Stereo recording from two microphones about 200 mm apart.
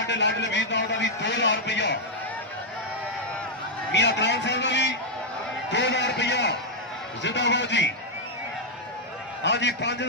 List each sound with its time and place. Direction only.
0.0 s a man's voice: 65° left (ahead or behind)
3.9 s a man's voice: 60° left (ahead or behind)
9.4 s a man's voice: 60° left (ahead or behind)